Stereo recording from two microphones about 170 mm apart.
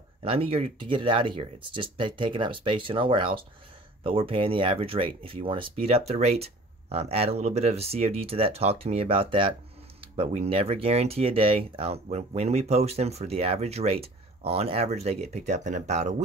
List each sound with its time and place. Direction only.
0.2 s speech: 35° right (ahead or behind)